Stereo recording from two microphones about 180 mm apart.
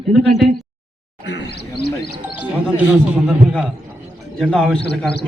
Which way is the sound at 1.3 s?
70° left (ahead or behind).